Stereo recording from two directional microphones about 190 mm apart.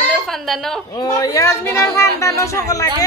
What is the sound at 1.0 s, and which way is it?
A woman's voice, 20° left (ahead or behind).